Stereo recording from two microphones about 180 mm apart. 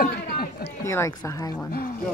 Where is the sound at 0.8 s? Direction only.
15° left (ahead or behind).